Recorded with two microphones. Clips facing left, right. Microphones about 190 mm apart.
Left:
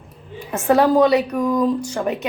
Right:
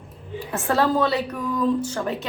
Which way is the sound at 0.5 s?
15° left (ahead or behind).